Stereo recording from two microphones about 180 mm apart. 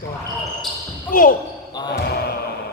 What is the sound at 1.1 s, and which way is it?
Speech, 50° left (ahead or behind).